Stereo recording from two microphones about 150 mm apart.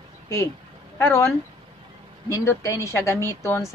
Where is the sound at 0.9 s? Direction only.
15° left (ahead or behind).